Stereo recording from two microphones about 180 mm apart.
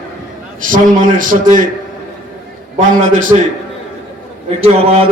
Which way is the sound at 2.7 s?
45° right (ahead or behind).